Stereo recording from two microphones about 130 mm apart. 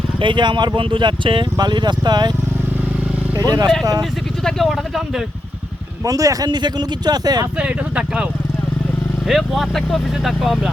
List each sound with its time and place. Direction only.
0.2 s speech: 40° right (ahead or behind)
3.3 s speech: 30° right (ahead or behind)
4.4 s speech: centre (ahead or behind)
6.1 s speech: 25° right (ahead or behind)
7.6 s speech: 10° right (ahead or behind)